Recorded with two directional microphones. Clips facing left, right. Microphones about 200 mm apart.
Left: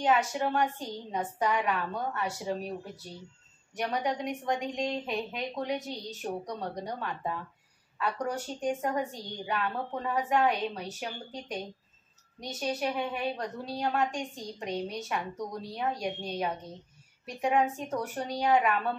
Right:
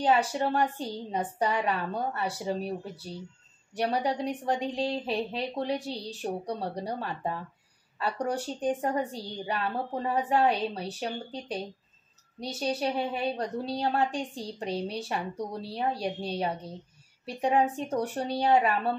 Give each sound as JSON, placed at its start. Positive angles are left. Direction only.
{"t": 0.0, "sound": "a woman's voice", "side_deg": -30}